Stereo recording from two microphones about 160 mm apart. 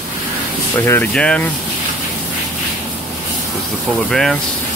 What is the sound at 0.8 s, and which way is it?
Speech, 10° left (ahead or behind).